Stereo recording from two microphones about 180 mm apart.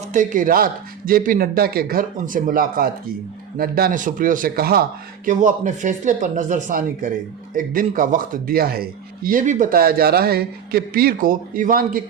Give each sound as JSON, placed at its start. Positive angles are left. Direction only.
{"t": 0.1, "sound": "speech", "side_deg": -45}